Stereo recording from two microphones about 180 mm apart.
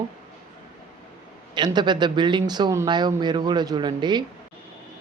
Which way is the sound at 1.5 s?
25° right (ahead or behind).